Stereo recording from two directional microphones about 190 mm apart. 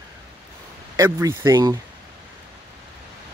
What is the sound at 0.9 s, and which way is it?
Speech, 15° right (ahead or behind).